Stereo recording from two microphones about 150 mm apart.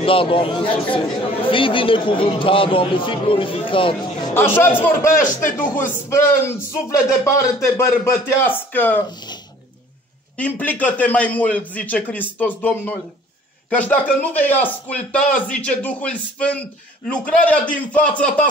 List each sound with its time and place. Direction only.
0.0 s a man's voice: 35° left (ahead or behind)
4.3 s speech: 15° left (ahead or behind)
10.3 s speech: 10° left (ahead or behind)